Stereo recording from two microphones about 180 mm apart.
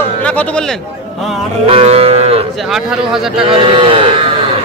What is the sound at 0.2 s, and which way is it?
Speech, 5° left (ahead or behind).